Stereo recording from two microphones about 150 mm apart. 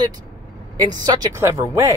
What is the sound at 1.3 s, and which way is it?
Speech, 20° right (ahead or behind).